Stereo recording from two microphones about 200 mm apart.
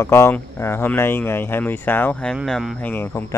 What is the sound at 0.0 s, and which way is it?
Speech, 15° left (ahead or behind).